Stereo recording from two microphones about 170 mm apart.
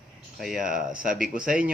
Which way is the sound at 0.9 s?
55° right (ahead or behind).